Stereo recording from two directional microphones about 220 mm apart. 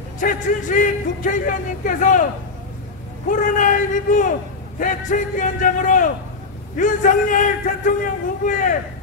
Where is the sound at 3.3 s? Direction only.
35° left (ahead or behind).